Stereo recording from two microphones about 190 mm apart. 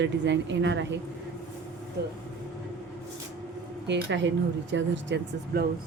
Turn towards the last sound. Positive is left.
turn(degrees=-70)  # may be behind; listen again after turning